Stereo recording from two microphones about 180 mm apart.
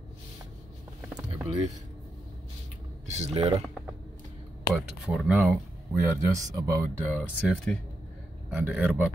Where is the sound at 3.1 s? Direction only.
35° right (ahead or behind).